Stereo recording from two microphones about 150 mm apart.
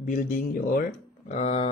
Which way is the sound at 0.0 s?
65° left (ahead or behind).